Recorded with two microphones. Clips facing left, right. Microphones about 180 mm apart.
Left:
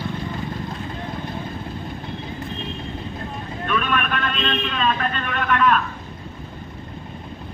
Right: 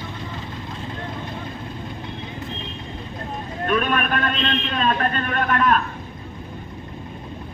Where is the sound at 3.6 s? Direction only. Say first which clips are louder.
Right 2 dB; 40° right (ahead or behind).